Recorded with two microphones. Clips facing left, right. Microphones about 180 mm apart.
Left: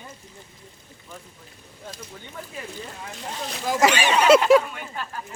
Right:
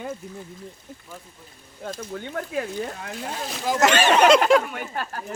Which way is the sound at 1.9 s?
60° right (ahead or behind).